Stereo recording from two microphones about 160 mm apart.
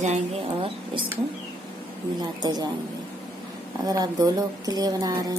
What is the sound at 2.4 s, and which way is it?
Speech, 25° right (ahead or behind).